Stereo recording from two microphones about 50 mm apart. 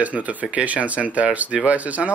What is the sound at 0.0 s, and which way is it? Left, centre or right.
Speech, right.